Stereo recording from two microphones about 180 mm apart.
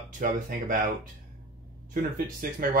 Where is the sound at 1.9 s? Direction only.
55° right (ahead or behind).